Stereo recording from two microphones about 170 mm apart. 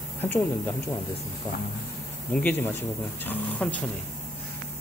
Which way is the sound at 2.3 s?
10° left (ahead or behind).